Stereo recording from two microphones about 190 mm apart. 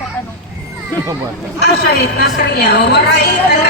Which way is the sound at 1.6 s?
55° left (ahead or behind).